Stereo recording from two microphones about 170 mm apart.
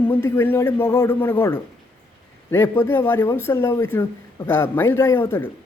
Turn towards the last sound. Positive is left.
turn(degrees=15)  # may be behind; listen again after turning